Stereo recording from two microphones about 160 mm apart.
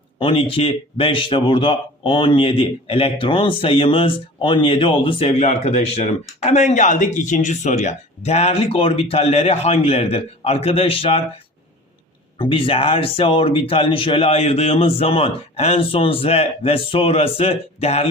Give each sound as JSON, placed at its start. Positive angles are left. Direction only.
{"t": 0.2, "sound": "a man's voice", "side_deg": 35}
{"t": 12.4, "sound": "a man's voice", "side_deg": 35}